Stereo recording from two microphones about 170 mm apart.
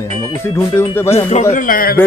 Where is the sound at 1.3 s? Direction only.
50° left (ahead or behind).